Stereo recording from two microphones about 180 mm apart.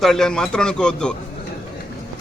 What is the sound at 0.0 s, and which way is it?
Speech, centre (ahead or behind).